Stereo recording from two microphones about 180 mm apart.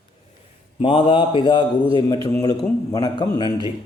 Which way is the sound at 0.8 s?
30° left (ahead or behind).